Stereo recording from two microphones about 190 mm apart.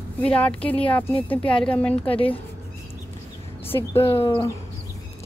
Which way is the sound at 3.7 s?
10° left (ahead or behind).